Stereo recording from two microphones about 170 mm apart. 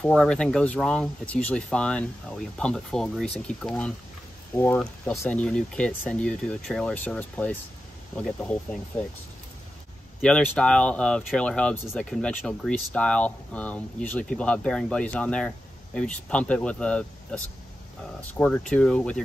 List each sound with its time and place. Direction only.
0.0 s speech: 5° left (ahead or behind)
10.2 s speech: 5° left (ahead or behind)